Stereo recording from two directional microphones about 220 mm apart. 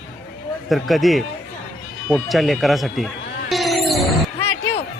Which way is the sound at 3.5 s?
Centre (ahead or behind).